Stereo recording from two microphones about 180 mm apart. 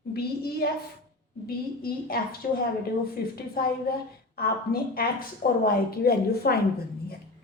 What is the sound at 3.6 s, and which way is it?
A woman's voice, 55° left (ahead or behind).